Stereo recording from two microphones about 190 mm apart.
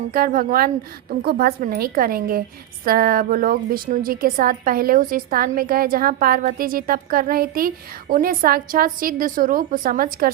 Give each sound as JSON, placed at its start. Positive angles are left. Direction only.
{"t": 0.1, "sound": "a woman's voice", "side_deg": -50}